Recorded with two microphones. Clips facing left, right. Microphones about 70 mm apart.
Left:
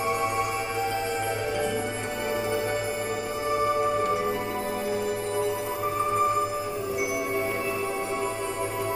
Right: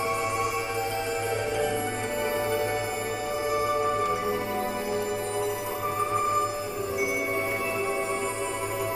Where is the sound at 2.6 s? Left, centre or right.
Right.